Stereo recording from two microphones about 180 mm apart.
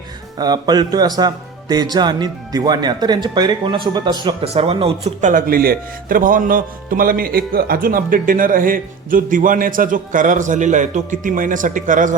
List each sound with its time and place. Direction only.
0.3 s speech: 20° right (ahead or behind); by 12.1 s 45° right (ahead or behind)